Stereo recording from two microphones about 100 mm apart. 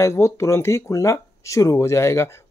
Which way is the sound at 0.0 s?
30° left (ahead or behind).